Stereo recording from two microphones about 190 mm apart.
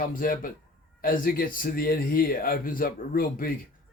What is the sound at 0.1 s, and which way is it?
Speech, 45° left (ahead or behind).